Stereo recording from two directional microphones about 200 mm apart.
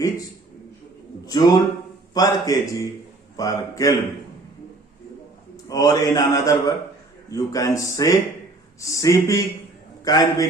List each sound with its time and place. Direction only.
1.3 s a man's voice: 20° left (ahead or behind)
5.6 s a man's voice: 20° left (ahead or behind)